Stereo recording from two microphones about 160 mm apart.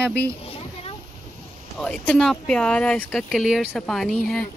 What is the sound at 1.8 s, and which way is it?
Speech, 5° left (ahead or behind).